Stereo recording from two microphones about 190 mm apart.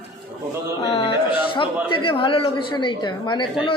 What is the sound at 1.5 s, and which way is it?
A woman's voice, 25° left (ahead or behind).